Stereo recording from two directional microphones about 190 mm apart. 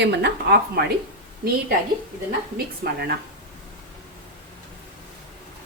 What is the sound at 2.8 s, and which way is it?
Speech, 55° right (ahead or behind).